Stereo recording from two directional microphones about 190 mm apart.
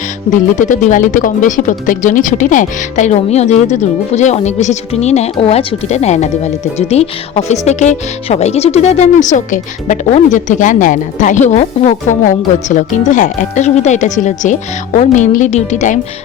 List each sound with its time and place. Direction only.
0.6 s speech: 45° left (ahead or behind)